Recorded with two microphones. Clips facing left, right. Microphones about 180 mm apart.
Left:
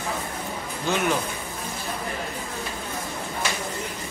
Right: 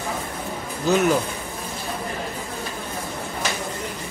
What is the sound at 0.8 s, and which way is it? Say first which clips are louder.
Speech: right 6 dB; 40° right (ahead or behind).